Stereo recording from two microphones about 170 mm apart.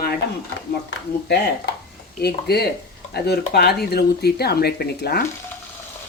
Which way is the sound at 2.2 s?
70° left (ahead or behind).